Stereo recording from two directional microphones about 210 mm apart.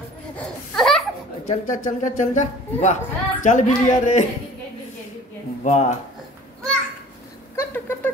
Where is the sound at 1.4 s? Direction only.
35° left (ahead or behind).